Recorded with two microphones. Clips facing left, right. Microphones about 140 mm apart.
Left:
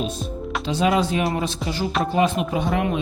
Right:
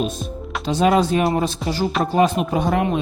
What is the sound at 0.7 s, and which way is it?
Speech, 45° right (ahead or behind).